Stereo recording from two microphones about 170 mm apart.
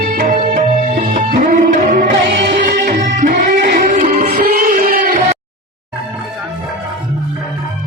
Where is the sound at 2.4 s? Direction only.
80° right.